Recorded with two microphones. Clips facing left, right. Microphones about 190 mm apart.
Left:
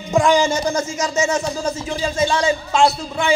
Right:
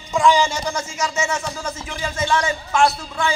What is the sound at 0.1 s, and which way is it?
A man's voice, 50° left (ahead or behind).